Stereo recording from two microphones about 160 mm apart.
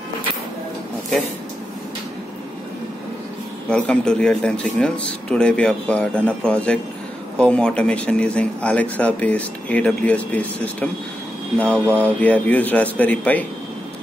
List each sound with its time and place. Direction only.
3.7 s a man's voice: 5° left (ahead or behind)
11.7 s speech: 15° right (ahead or behind)
12.2 s a man's voice: 10° left (ahead or behind)